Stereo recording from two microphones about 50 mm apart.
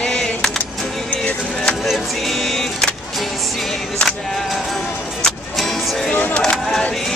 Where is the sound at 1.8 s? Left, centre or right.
Centre.